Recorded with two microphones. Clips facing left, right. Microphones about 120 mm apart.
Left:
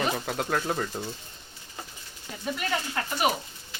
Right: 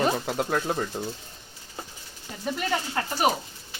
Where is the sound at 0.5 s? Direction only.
10° right (ahead or behind).